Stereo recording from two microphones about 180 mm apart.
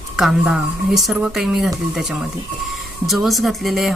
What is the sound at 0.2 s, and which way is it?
Speech, centre (ahead or behind).